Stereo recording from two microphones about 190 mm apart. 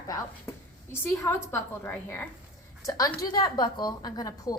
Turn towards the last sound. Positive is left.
turn(degrees=20)  # may be behind; listen again after turning